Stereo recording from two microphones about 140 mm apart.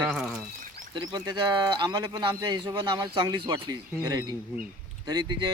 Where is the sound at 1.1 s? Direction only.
30° right (ahead or behind).